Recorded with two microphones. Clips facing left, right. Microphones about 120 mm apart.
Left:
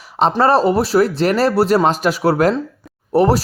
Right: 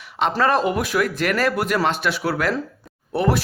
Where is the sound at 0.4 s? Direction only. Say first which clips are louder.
Left 6 dB; 35° left (ahead or behind).